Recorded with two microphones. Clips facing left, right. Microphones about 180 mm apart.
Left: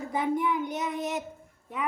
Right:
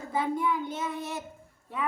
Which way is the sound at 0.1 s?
20° left (ahead or behind).